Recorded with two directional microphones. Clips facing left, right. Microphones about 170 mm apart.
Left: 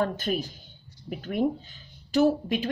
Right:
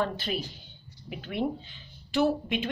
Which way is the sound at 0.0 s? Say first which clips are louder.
Left 3 dB; 45° left (ahead or behind).